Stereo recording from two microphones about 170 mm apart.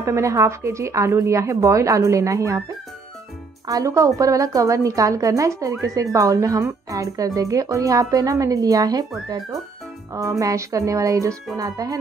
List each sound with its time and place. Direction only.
0.0 s speech: 15° right (ahead or behind)
10.4 s speech: 20° right (ahead or behind)